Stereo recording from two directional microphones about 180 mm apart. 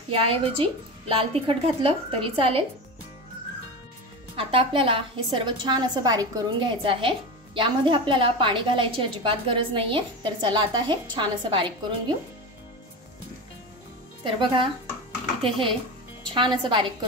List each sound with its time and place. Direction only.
0.1 s a woman's voice: 30° right (ahead or behind)
4.4 s a woman's voice: 30° right (ahead or behind)
14.2 s a woman's voice: 30° right (ahead or behind)
16.3 s a woman's voice: 25° right (ahead or behind)